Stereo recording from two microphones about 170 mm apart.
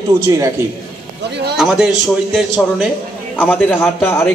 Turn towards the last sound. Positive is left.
turn(degrees=10)  # may be behind; listen again after turning